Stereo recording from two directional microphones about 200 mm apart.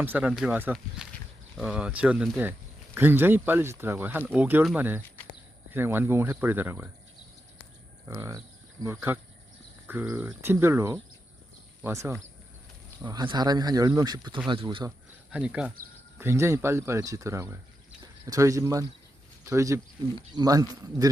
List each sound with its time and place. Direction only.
0.0 s speech: 10° right (ahead or behind)
8.0 s speech: 15° right (ahead or behind)
14.8 s speech: 5° right (ahead or behind)